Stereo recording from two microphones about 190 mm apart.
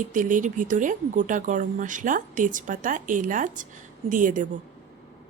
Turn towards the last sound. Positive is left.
turn(degrees=-45)  # may be behind; listen again after turning